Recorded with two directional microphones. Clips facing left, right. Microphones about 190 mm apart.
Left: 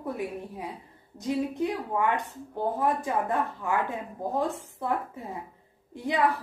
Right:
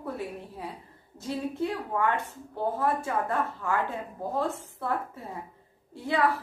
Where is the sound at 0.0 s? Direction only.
15° left (ahead or behind).